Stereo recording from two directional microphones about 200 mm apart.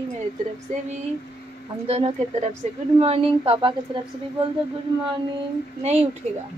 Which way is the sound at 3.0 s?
30° right (ahead or behind).